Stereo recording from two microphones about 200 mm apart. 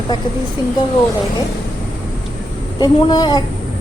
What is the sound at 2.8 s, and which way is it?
Speech, 20° left (ahead or behind).